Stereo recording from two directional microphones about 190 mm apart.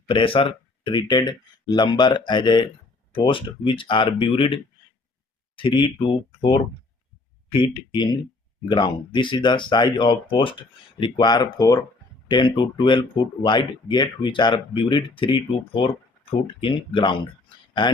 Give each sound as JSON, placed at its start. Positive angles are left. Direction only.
{"t": 0.1, "sound": "speech", "side_deg": 25}